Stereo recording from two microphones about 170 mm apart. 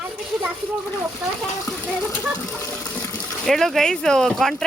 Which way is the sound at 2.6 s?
15° left (ahead or behind).